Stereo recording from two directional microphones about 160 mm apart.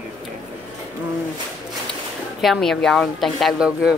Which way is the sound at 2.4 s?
Centre (ahead or behind).